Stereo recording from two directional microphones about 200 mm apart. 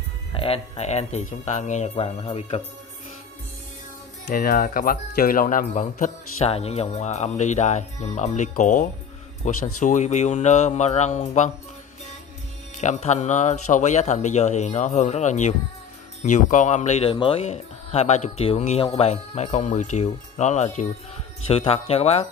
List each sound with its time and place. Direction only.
0.3 s speech: 30° left (ahead or behind)
4.3 s speech: 45° left (ahead or behind)
9.5 s speech: 90° left
9.8 s speech: 40° left (ahead or behind)
12.8 s speech: 35° left (ahead or behind)